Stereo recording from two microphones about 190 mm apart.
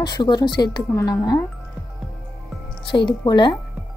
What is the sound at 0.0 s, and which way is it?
A woman's voice, 20° left (ahead or behind).